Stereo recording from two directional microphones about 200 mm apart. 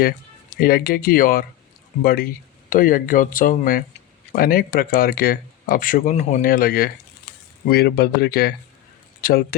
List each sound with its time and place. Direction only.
0.6 s speech: 50° left (ahead or behind)